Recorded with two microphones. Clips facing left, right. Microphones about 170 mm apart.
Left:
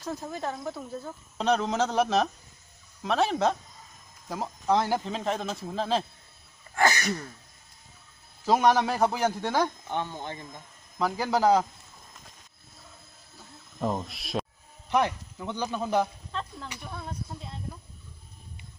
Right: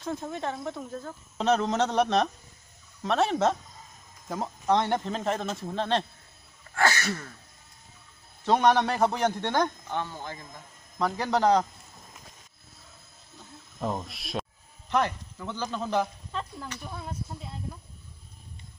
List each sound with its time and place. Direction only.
0.0 s speech: centre (ahead or behind)
6.7 s throat clearing: 20° left (ahead or behind)
8.5 s speech: 5° left (ahead or behind)
9.8 s speech: 20° left (ahead or behind)
11.0 s speech: 5° left (ahead or behind)
13.7 s speech: centre (ahead or behind)
14.9 s speech: 15° left (ahead or behind)
16.3 s a sound: 5° right (ahead or behind)
16.8 s speech: 5° right (ahead or behind)